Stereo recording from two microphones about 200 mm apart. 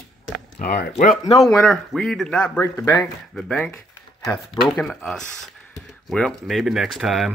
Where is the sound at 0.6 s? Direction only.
50° left (ahead or behind).